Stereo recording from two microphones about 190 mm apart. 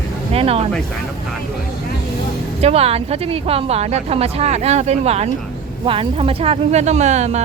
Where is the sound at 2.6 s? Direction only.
30° right (ahead or behind).